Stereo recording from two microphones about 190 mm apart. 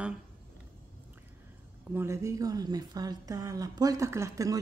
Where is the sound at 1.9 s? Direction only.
15° right (ahead or behind).